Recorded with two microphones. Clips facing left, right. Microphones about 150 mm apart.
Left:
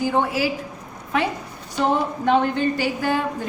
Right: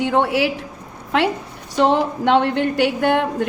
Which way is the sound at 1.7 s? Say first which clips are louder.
Right 4 dB; 75° right (ahead or behind).